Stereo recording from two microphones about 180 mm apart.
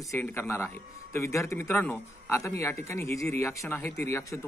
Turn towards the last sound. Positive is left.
turn(degrees=15)  # may be behind; listen again after turning